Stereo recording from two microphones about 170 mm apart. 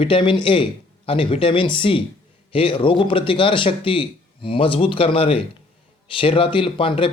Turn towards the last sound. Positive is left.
turn(degrees=30)  # may be behind; listen again after turning